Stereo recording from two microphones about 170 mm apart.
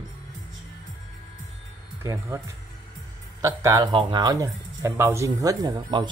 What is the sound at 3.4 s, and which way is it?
Speech, 20° right (ahead or behind).